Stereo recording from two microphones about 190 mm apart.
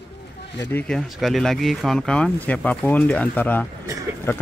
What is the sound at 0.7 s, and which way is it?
Speech, 5° left (ahead or behind).